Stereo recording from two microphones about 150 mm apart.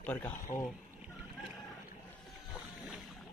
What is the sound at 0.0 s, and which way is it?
Speech, 10° left (ahead or behind).